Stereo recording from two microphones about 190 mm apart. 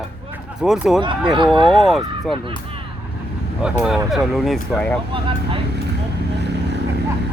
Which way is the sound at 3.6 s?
5° right (ahead or behind).